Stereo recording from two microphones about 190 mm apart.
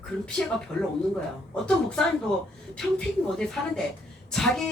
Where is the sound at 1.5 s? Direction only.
5° left (ahead or behind).